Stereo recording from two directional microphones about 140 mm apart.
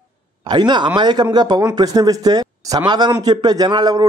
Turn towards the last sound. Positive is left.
turn(degrees=-30)  # may be behind; listen again after turning